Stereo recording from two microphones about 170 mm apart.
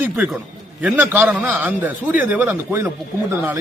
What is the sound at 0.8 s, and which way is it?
A man's voice, 10° right (ahead or behind).